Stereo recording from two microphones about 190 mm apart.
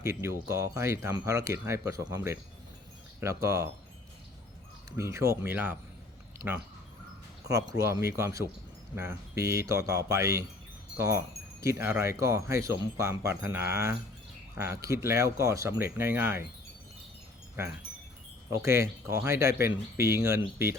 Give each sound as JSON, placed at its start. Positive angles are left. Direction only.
{"t": 0.0, "sound": "speech", "side_deg": -15}
{"t": 4.9, "sound": "speech", "side_deg": -15}
{"t": 7.7, "sound": "speech", "side_deg": -15}
{"t": 10.9, "sound": "wind chime", "side_deg": -15}
{"t": 11.6, "sound": "speech", "side_deg": -15}
{"t": 18.6, "sound": "speech", "side_deg": -15}